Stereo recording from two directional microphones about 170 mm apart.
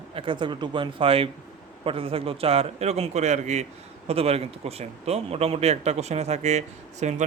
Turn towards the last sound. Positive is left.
turn(degrees=-45)  # may be behind; listen again after turning